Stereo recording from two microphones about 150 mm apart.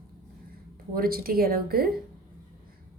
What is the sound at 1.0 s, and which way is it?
Speech, 80° right.